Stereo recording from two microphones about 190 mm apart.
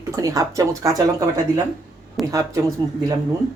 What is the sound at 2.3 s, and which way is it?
Speech, 15° right (ahead or behind).